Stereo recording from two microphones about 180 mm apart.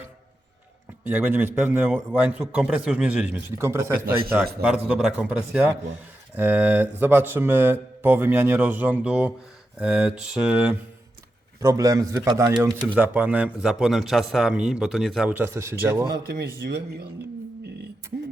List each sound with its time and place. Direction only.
1.0 s a man's voice: 10° right (ahead or behind)
11.6 s a man's voice: 20° right (ahead or behind)
16.0 s a man's voice: 60° right (ahead or behind)
17.6 s a sound: 65° right (ahead or behind)